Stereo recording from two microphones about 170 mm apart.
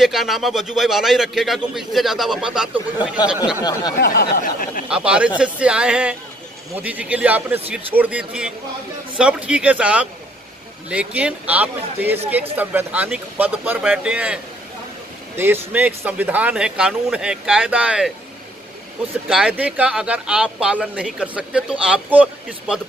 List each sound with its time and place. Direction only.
0.0 s speech: centre (ahead or behind)
4.0 s a sound: 70° left (ahead or behind)
4.8 s speech: 5° right (ahead or behind)
19.2 s speech: 5° right (ahead or behind)